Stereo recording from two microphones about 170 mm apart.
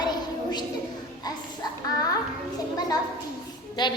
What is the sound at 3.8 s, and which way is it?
Speech, 25° left (ahead or behind).